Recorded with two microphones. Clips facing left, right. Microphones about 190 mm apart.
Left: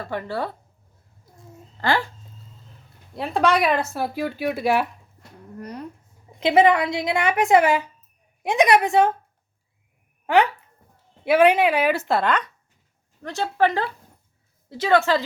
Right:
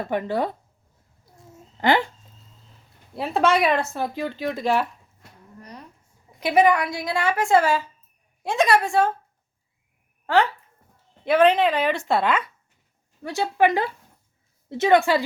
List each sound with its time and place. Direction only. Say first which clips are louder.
0.0 s speech: right 3 dB; 20° right (ahead or behind)
1.8 s speech: right 3 dB; 20° right (ahead or behind)
3.2 s speech: even; centre (ahead or behind)
6.4 s a woman's voice: left 2 dB; 25° left (ahead or behind)
10.2 s speech: left 2 dB; 15° left (ahead or behind); by 12.5 s centre (ahead or behind)
13.2 s speech: right 1 dB; 15° right (ahead or behind)